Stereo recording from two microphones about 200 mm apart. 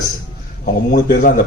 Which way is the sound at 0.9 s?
45° left (ahead or behind).